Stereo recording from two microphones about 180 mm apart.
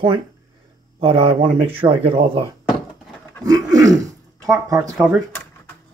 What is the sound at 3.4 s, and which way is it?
Speech, 20° right (ahead or behind).